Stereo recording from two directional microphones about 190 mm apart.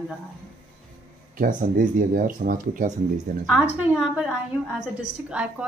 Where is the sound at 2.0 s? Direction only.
45° right (ahead or behind).